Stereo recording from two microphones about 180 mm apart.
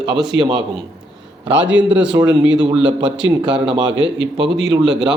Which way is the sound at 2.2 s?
90° right.